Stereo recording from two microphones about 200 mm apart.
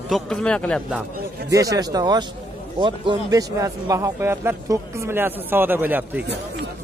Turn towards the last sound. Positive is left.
turn(degrees=-10)  # may be behind; listen again after turning